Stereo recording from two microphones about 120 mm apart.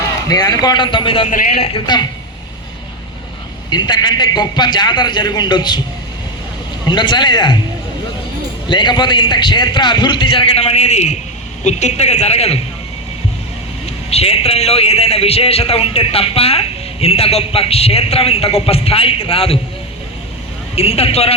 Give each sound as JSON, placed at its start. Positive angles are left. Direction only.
{"t": 0.3, "sound": "a man's voice", "side_deg": 30}
{"t": 1.3, "sound": "a man's voice", "side_deg": 75}
{"t": 3.7, "sound": "a man's voice", "side_deg": 35}
{"t": 6.8, "sound": "a man's voice", "side_deg": 40}
{"t": 8.6, "sound": "a man's voice", "side_deg": 40}
{"t": 13.8, "sound": "a man's voice", "side_deg": 60}
{"t": 20.7, "sound": "a man's voice", "side_deg": 55}